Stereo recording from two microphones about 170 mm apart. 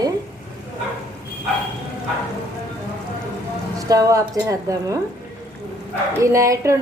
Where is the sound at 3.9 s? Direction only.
20° right (ahead or behind).